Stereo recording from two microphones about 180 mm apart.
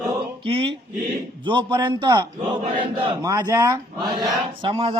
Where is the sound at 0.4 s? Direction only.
30° right (ahead or behind).